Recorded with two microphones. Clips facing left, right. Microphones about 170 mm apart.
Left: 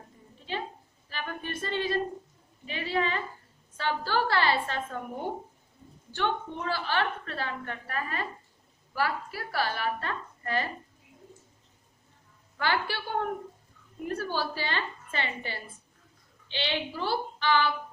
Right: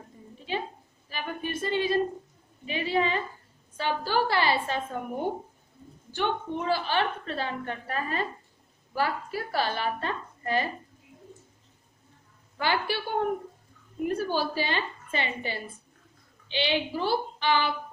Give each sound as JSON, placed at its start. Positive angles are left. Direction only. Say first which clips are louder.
{"t": 1.1, "sound": "a woman's voice", "louder": "right 3 dB", "side_deg": -10}
{"t": 6.1, "sound": "a woman's voice", "louder": "right 2 dB", "side_deg": -15}
{"t": 12.5, "sound": "a woman's voice", "louder": "right 2 dB", "side_deg": -15}